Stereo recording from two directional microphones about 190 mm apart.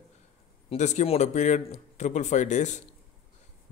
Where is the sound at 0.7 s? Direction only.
40° left (ahead or behind).